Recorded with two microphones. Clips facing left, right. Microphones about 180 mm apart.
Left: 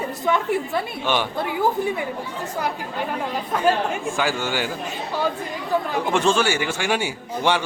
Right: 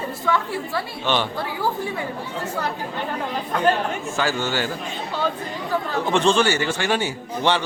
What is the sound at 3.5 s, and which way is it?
A man's voice, 10° left (ahead or behind).